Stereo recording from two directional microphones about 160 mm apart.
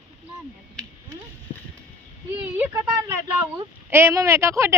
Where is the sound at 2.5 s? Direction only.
15° right (ahead or behind).